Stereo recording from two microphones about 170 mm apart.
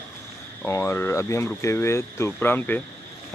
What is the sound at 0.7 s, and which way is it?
A man's voice, 15° left (ahead or behind).